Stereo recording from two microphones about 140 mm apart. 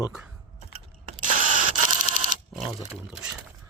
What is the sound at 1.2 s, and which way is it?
Camera, 70° right (ahead or behind).